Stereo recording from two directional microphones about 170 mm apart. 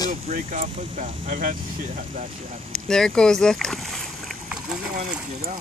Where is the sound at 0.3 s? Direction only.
55° right (ahead or behind).